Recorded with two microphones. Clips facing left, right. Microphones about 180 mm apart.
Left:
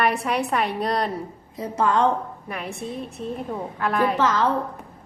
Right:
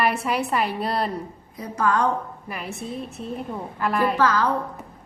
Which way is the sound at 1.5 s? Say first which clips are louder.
Left 1 dB; 25° left (ahead or behind).